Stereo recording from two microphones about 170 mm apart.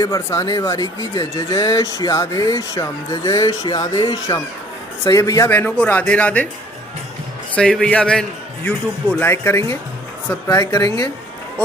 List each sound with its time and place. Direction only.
0.0 s speech: 20° left (ahead or behind)
5.5 s a man's voice: 10° left (ahead or behind)
7.5 s a man's voice: 5° left (ahead or behind)
10.6 s speech: 20° left (ahead or behind)